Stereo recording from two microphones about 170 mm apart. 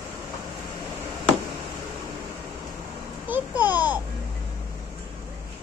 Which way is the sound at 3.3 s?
10° right (ahead or behind).